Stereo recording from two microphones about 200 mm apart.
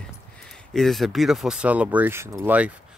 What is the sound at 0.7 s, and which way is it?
Speech, centre (ahead or behind).